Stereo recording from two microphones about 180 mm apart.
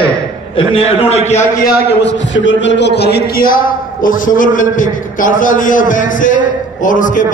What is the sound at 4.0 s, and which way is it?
A man's voice, 50° left (ahead or behind).